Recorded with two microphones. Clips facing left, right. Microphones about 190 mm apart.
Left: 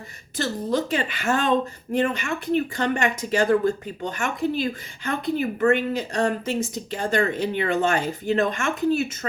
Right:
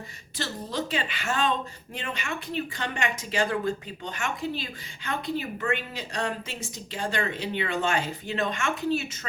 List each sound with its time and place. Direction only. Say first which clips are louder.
0.3 s a woman's voice: left 7 dB; 45° left (ahead or behind)